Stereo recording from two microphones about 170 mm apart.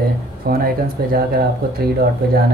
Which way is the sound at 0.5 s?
60° right (ahead or behind).